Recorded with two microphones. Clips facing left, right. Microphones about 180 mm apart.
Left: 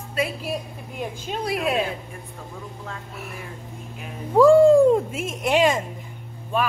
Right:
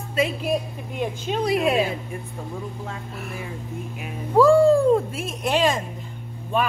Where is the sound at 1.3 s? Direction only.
Centre (ahead or behind).